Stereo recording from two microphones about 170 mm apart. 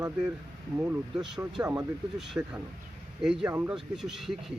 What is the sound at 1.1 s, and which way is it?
Speech, 5° right (ahead or behind).